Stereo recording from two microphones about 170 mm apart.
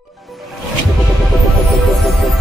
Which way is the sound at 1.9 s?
Centre (ahead or behind).